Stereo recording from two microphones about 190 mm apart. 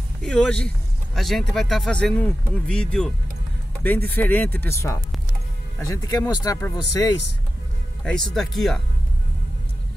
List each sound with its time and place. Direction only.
0.2 s speech: 5° left (ahead or behind)
4.1 s speech: 10° left (ahead or behind)
5.8 s speech: 15° left (ahead or behind)
8.0 s speech: 5° left (ahead or behind)